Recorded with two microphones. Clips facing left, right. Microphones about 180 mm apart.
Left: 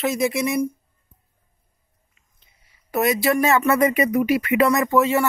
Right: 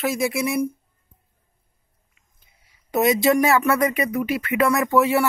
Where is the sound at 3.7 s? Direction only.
5° left (ahead or behind).